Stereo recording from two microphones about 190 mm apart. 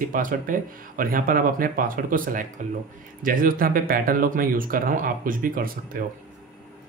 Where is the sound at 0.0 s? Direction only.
45° right (ahead or behind).